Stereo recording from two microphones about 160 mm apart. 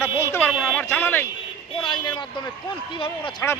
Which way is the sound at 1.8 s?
30° left (ahead or behind).